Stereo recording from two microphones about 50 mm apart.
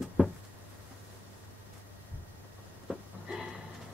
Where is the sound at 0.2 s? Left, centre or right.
Centre.